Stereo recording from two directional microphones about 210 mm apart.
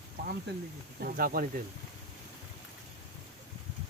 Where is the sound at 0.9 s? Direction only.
45° right (ahead or behind).